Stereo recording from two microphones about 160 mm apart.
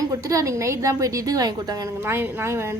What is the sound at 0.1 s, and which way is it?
A woman's voice, 20° right (ahead or behind).